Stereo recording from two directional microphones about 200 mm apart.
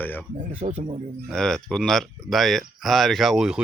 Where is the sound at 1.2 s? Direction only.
5° left (ahead or behind).